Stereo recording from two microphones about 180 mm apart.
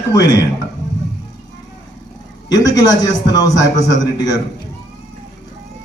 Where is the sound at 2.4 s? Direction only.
20° left (ahead or behind).